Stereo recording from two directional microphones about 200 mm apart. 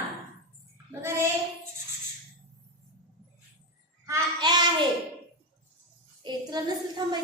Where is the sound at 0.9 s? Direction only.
10° right (ahead or behind).